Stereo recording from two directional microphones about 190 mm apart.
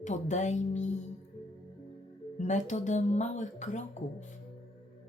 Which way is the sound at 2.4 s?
40° left (ahead or behind).